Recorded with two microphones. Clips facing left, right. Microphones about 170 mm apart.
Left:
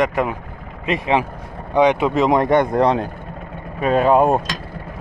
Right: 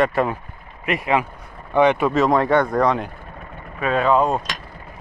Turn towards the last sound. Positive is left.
turn(degrees=50)  # may be behind; listen again after turning